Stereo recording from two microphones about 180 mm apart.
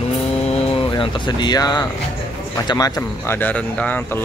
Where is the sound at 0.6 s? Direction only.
30° left (ahead or behind).